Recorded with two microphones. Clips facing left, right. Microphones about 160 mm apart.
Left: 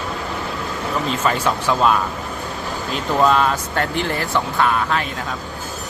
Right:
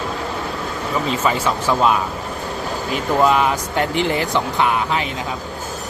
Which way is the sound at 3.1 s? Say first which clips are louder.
Even; 10° right (ahead or behind).